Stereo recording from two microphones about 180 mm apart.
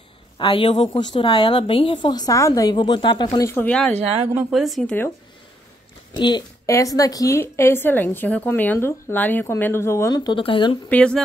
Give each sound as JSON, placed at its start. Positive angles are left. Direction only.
{"t": 0.4, "sound": "speech", "side_deg": 25}
{"t": 6.1, "sound": "a woman's voice", "side_deg": 25}
{"t": 10.9, "sound": "a woman's voice", "side_deg": 5}